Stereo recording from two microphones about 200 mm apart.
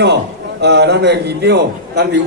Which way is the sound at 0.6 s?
60° right (ahead or behind).